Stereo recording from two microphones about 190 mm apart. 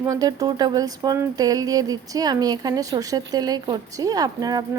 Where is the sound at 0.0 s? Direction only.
20° right (ahead or behind).